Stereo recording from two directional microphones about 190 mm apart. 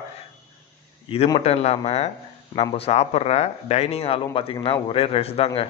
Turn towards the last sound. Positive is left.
turn(degrees=30)  # may be behind; listen again after turning